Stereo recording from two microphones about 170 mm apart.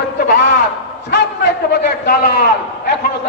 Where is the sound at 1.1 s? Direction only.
90° left; by 2.3 s 70° left (ahead or behind).